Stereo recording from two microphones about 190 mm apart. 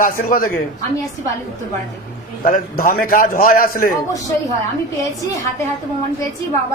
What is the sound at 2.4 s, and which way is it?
Speech, 45° left (ahead or behind).